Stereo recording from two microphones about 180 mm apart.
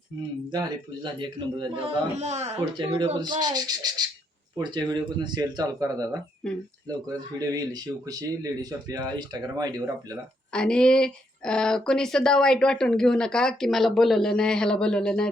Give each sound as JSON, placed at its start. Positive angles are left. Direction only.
{"t": 1.0, "sound": "speech", "side_deg": -25}
{"t": 2.7, "sound": "speech", "side_deg": -25}
{"t": 6.4, "sound": "speech", "side_deg": 5}
{"t": 7.3, "sound": "speech", "side_deg": -20}
{"t": 10.5, "sound": "speech", "side_deg": 5}